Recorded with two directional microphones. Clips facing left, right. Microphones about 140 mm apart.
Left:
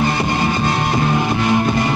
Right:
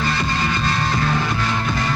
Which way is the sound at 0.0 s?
20° left (ahead or behind).